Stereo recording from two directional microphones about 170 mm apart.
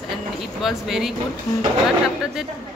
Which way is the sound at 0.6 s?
Centre (ahead or behind).